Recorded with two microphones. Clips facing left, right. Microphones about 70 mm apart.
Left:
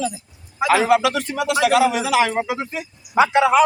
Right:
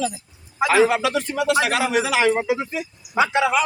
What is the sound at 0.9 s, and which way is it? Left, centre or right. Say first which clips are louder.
Speech: left 5 dB; left.